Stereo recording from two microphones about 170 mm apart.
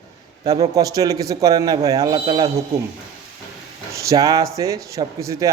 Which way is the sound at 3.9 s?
20° right (ahead or behind).